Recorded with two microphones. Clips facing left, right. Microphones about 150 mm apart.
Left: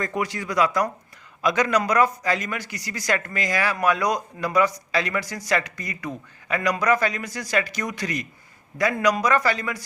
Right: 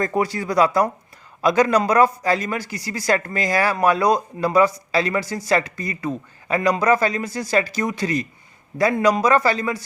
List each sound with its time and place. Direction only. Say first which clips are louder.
0.0 s a man's voice: right 5 dB; 35° right (ahead or behind)